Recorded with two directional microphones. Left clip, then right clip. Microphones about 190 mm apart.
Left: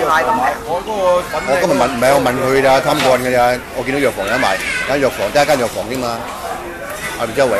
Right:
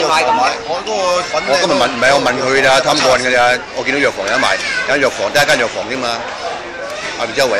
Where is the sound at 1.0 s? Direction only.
50° right (ahead or behind).